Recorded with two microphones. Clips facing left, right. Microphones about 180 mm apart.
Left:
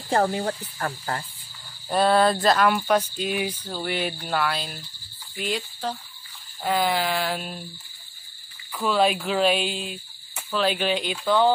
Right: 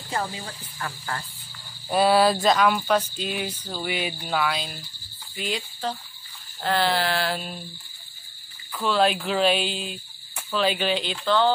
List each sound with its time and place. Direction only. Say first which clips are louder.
0.1 s cricket: left 8 dB; 60° left (ahead or behind); by 1.1 s 45° left (ahead or behind)
1.9 s speech: even; 5° right (ahead or behind)
5.4 s cricket: left 1 dB; 10° left (ahead or behind)
6.6 s speech: even; 5° left (ahead or behind)
8.7 s speech: even; 5° left (ahead or behind)
11.2 s cricket: left 1 dB; 15° left (ahead or behind)